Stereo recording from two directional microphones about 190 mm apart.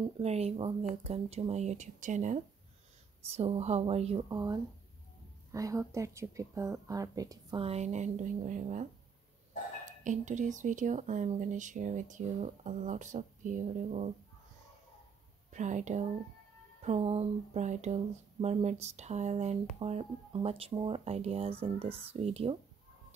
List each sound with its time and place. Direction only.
0.2 s speech: 35° right (ahead or behind)
4.3 s speech: 20° right (ahead or behind)
7.6 s speech: 35° right (ahead or behind)
10.0 s speech: 40° right (ahead or behind)
15.5 s speech: 40° right (ahead or behind)